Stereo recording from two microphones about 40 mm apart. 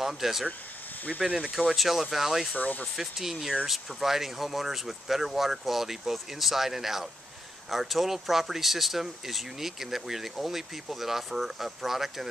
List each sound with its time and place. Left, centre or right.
0.0 s speech: centre
1.2 s speech: right
1.8 s speech: centre
2.5 s speech: left
3.0 s speech: centre